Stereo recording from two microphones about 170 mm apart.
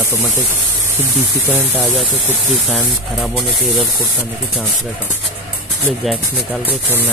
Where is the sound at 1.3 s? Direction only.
10° right (ahead or behind).